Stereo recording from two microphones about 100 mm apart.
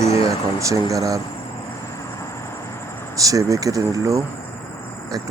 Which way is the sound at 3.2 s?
35° right (ahead or behind).